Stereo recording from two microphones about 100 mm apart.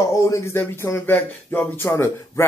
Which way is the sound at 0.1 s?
30° left (ahead or behind).